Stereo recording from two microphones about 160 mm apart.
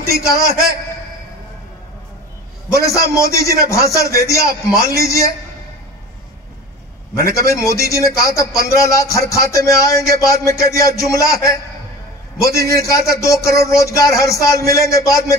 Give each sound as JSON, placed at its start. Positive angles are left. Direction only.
{"t": 0.0, "sound": "a man's voice", "side_deg": -70}
{"t": 2.7, "sound": "speech", "side_deg": 20}
{"t": 7.3, "sound": "speech", "side_deg": 20}
{"t": 12.5, "sound": "speech", "side_deg": 20}